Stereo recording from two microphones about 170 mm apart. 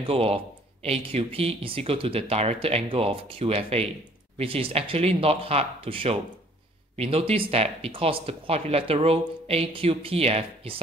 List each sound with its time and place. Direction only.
0.0 s speech: 35° right (ahead or behind)